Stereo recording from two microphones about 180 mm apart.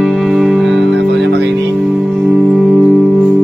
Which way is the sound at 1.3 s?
70° right (ahead or behind).